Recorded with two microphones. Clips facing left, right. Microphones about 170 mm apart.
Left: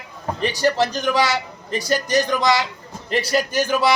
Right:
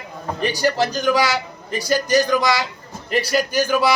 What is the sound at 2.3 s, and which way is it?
Speech, 20° left (ahead or behind).